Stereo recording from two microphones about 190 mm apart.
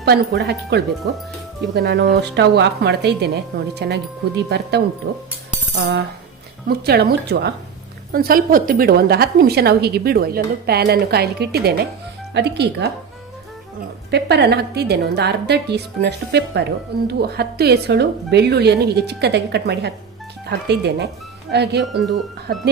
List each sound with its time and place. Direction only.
0.0 s a woman's voice: 60° right (ahead or behind)
5.8 s a woman's voice: 55° right (ahead or behind)
8.1 s a woman's voice: 50° right (ahead or behind)
14.1 s a woman's voice: 60° right (ahead or behind)